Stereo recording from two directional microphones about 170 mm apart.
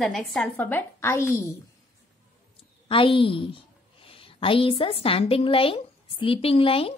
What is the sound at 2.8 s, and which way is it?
A woman's voice, 30° left (ahead or behind).